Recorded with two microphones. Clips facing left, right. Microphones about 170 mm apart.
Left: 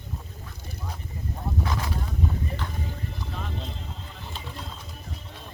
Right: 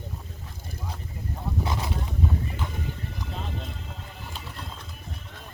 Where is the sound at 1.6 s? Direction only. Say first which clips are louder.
Right 1 dB; 25° right (ahead or behind).